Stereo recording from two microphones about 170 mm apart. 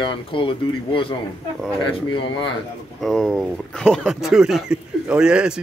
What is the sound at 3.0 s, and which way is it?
Speech, 5° left (ahead or behind).